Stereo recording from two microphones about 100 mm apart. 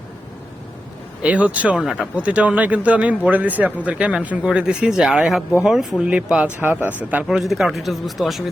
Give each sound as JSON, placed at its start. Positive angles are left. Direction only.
{"t": 1.2, "sound": "a man's voice", "side_deg": -15}
{"t": 6.6, "sound": "a man's voice", "side_deg": -20}
{"t": 7.3, "sound": "a man's voice", "side_deg": 0}